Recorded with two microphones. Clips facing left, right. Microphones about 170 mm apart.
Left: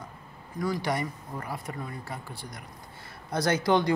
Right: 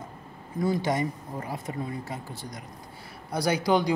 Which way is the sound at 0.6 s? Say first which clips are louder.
Right 3 dB; 20° right (ahead or behind).